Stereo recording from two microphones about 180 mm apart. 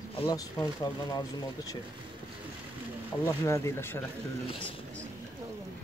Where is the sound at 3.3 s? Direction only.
15° left (ahead or behind).